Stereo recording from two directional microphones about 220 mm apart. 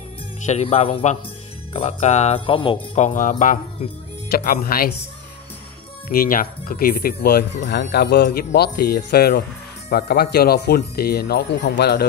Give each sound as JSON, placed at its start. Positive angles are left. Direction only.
{"t": 0.5, "sound": "speech", "side_deg": 30}
{"t": 6.1, "sound": "speech", "side_deg": 40}